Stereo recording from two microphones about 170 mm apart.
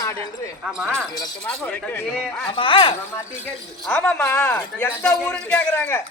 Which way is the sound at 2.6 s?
30° left (ahead or behind).